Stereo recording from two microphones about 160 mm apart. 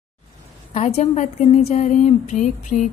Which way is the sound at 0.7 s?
45° left (ahead or behind).